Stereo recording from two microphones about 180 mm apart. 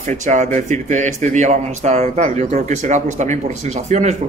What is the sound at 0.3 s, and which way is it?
Speech, 45° right (ahead or behind).